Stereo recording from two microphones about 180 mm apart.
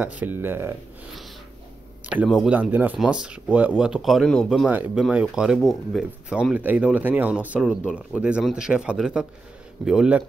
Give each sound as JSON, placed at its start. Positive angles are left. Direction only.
{"t": 0.0, "sound": "speech", "side_deg": -10}
{"t": 2.2, "sound": "speech", "side_deg": 0}
{"t": 4.6, "sound": "speech", "side_deg": -10}